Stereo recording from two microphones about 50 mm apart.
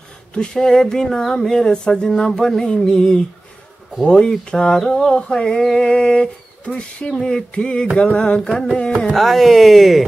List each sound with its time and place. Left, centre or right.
0.3 s speech: centre
6.6 s a sound: left
8.3 s speech: centre
9.1 s speech: centre